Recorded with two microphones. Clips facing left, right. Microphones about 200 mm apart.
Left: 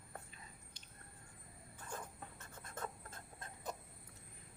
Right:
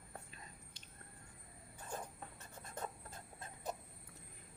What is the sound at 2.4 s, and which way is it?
Writing, 20° right (ahead or behind).